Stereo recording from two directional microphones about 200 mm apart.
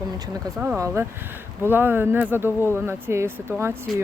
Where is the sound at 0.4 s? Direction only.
15° right (ahead or behind).